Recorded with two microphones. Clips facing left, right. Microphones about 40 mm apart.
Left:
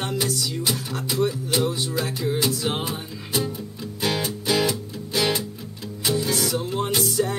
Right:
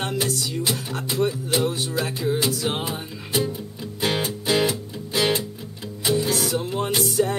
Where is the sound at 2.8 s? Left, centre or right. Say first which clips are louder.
Even; right.